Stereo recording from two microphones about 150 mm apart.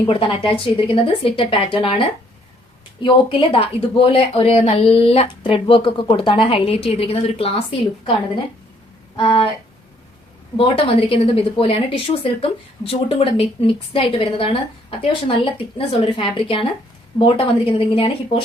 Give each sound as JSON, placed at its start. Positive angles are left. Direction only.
{"t": 0.1, "sound": "speech", "side_deg": 35}
{"t": 9.1, "sound": "speech", "side_deg": 35}
{"t": 11.1, "sound": "speech", "side_deg": 40}